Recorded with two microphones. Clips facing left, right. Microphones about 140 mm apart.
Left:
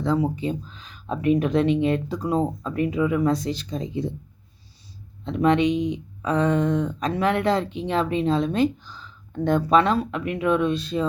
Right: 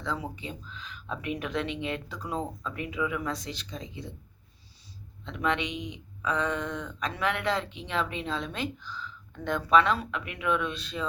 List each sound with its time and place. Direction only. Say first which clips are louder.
0.0 s speech: left 12 dB; 40° left (ahead or behind)
5.2 s speech: left 10 dB; 40° left (ahead or behind)